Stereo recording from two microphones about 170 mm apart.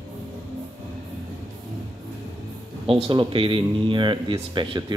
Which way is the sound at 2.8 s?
30° right (ahead or behind).